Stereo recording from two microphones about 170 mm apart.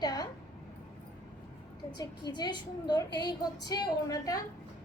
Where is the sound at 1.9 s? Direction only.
25° left (ahead or behind).